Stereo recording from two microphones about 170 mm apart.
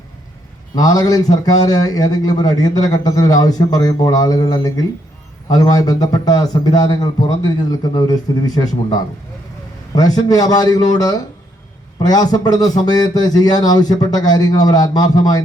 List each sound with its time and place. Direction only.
0.8 s a man's voice: 20° left (ahead or behind)